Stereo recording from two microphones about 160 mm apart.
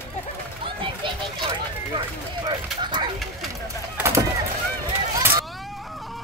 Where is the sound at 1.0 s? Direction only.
30° right (ahead or behind).